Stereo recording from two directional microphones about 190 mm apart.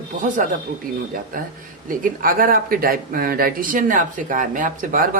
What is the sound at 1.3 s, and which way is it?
Speech, 45° right (ahead or behind).